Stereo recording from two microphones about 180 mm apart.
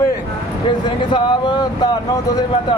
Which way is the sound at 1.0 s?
25° left (ahead or behind).